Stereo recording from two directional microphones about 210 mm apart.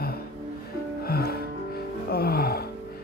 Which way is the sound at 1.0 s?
50° left (ahead or behind).